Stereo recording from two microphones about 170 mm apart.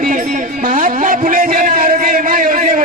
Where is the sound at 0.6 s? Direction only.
55° right (ahead or behind).